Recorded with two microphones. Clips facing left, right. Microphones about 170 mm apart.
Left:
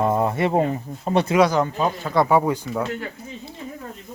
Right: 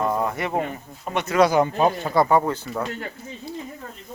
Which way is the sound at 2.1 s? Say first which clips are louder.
Left 3 dB; 5° left (ahead or behind).